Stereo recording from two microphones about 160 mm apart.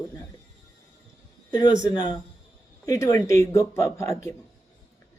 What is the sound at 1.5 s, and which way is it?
A man's voice, 25° left (ahead or behind).